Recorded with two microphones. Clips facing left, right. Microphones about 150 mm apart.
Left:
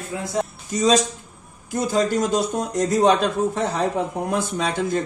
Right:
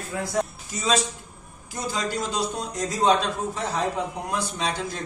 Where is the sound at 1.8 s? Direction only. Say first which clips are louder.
Left 8 dB; 50° left (ahead or behind).